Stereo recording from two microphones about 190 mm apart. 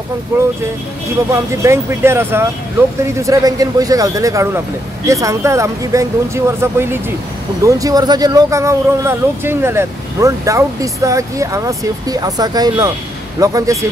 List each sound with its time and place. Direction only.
1.3 s speech: 15° right (ahead or behind)